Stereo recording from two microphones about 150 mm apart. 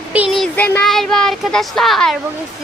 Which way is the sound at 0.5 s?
10° left (ahead or behind).